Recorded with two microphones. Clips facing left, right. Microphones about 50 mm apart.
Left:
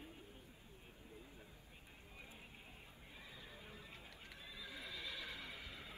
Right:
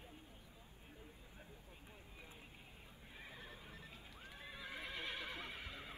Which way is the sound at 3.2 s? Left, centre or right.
Right.